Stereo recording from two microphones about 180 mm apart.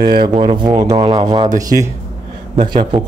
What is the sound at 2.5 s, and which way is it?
Speech, 25° right (ahead or behind).